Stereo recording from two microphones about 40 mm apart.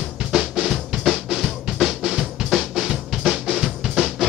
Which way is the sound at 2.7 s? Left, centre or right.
Centre.